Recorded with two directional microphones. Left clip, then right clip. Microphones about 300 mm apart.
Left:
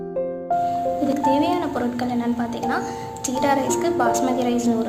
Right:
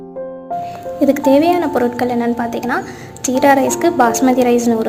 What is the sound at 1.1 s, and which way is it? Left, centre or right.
A woman's voice, centre.